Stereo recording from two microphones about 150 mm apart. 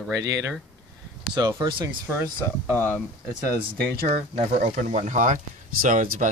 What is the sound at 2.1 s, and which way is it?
Speech, 15° right (ahead or behind).